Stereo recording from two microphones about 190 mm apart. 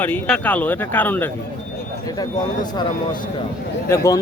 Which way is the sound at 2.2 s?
20° left (ahead or behind).